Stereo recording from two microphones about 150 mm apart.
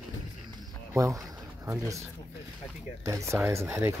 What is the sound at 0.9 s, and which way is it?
Speech, 20° right (ahead or behind).